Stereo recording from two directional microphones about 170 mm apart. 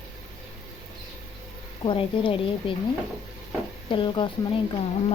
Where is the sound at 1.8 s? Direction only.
30° left (ahead or behind).